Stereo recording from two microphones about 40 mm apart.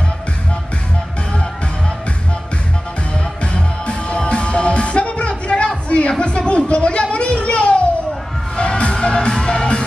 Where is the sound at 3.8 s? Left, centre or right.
Left.